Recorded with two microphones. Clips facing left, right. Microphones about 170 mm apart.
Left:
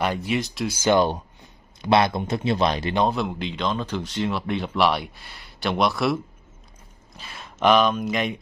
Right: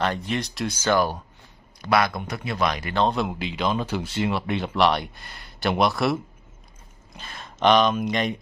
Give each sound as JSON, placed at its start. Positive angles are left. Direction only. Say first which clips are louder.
{"t": 0.0, "sound": "speech", "louder": "left 1 dB", "side_deg": 10}
{"t": 0.8, "sound": "speech", "louder": "left 3 dB", "side_deg": 20}
{"t": 3.1, "sound": "speech", "louder": "even", "side_deg": -5}
{"t": 7.2, "sound": "speech", "louder": "even", "side_deg": 5}